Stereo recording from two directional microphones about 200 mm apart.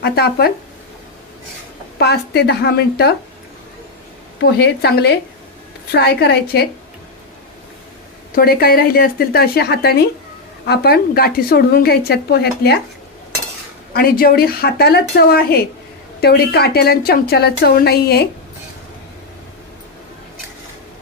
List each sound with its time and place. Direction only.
0.0 s a woman's voice: 50° left (ahead or behind)
2.0 s a woman's voice: 55° left (ahead or behind)
4.4 s a woman's voice: 55° left (ahead or behind)
8.4 s a woman's voice: 50° left (ahead or behind)
13.9 s a woman's voice: 45° left (ahead or behind)